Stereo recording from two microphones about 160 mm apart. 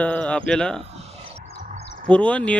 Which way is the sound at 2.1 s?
10° left (ahead or behind).